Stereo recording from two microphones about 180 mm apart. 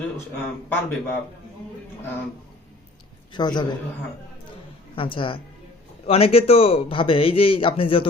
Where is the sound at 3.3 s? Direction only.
25° left (ahead or behind).